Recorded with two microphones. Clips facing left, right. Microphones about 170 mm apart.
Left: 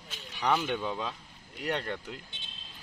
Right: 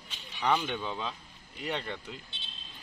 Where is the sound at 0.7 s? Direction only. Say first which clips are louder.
Left 2 dB; 5° left (ahead or behind).